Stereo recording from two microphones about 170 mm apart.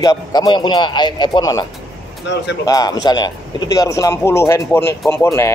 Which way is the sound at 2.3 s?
90° left.